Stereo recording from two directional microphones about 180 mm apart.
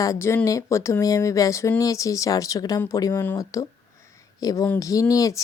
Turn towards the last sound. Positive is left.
turn(degrees=20)  # may be behind; listen again after turning